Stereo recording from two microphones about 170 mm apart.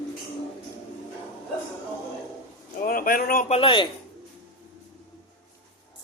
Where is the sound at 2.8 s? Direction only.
55° left (ahead or behind).